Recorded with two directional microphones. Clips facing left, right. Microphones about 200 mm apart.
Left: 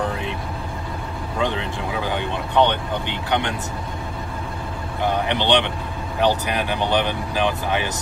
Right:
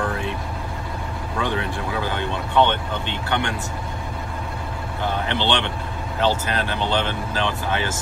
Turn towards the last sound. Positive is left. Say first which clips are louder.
# left 1 dB
turn(degrees=15)  # may be behind; listen again after turning